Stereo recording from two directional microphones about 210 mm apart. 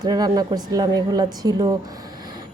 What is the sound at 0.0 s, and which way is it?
A woman's voice, 20° right (ahead or behind).